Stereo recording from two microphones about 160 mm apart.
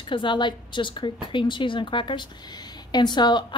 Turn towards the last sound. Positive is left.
turn(degrees=30)  # may be behind; listen again after turning